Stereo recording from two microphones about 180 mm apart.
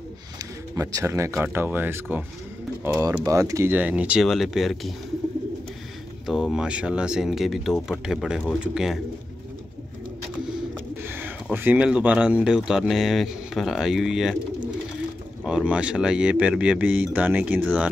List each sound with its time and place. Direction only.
0.7 s speech: 15° right (ahead or behind)
3.3 s speech: 15° right (ahead or behind); by 4.9 s centre (ahead or behind)
6.2 s speech: centre (ahead or behind)
11.1 s speech: 10° right (ahead or behind)
15.4 s speech: 5° right (ahead or behind)